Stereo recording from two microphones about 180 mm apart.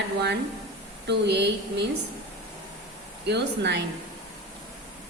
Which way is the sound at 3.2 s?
70° right (ahead or behind).